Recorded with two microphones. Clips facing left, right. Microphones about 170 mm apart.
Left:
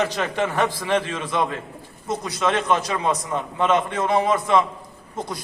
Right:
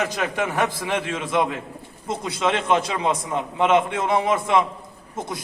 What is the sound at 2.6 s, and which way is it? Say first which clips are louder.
A man's voice: right 1 dB; 20° right (ahead or behind).